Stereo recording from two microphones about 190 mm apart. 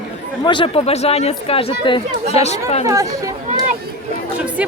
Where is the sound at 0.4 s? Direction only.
25° left (ahead or behind).